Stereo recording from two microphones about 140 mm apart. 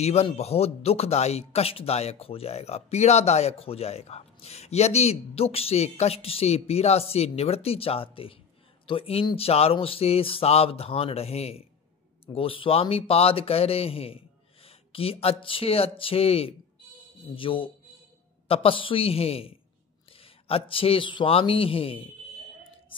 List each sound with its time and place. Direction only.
0.0 s a man's voice: 50° left (ahead or behind)